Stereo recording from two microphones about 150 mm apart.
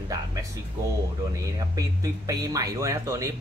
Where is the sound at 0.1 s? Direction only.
25° right (ahead or behind).